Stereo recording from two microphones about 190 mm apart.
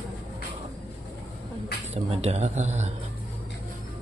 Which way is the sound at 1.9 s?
35° right (ahead or behind).